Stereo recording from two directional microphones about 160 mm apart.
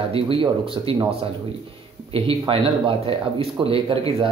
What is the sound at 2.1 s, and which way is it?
Speech, 35° right (ahead or behind).